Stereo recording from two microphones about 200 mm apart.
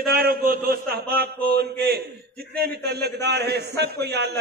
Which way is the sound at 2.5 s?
55° right (ahead or behind).